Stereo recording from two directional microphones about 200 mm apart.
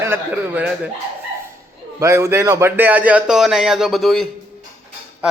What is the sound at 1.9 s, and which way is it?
A man's voice, 15° right (ahead or behind).